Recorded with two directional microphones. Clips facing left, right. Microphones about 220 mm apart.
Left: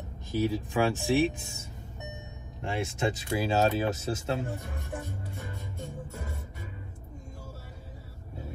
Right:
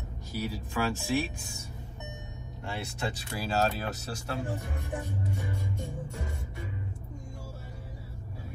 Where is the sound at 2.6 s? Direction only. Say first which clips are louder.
Left 5 dB; 20° left (ahead or behind).